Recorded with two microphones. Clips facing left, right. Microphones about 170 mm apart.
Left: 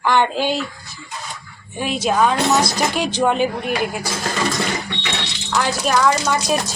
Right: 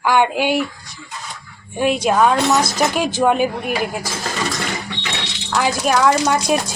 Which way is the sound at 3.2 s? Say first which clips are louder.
Right 1 dB; 10° right (ahead or behind).